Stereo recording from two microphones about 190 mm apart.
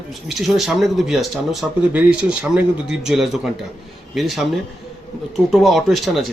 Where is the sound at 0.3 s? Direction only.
Centre (ahead or behind).